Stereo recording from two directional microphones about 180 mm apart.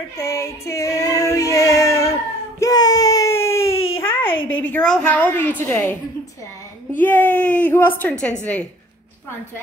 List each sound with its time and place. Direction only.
0.2 s child singing: 15° left (ahead or behind)
2.6 s baby cry: 20° left (ahead or behind)
4.4 s a sound: 90° left
4.6 s a woman's voice: 5° left (ahead or behind)
7.0 s a woman's voice: 10° left (ahead or behind)